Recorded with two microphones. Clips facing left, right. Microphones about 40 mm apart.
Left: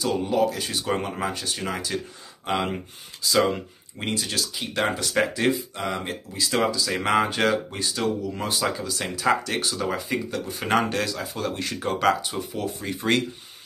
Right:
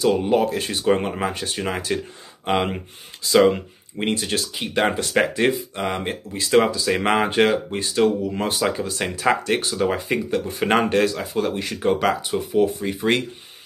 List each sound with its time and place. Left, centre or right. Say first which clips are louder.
0.0 s speech: right 4 dB; right
0.9 s speech: right 4 dB; centre
1.3 s speech: right 3 dB; right
11.3 s speech: right 5 dB; centre
12.3 s speech: right 9 dB; right
12.8 s speech: right 3 dB; centre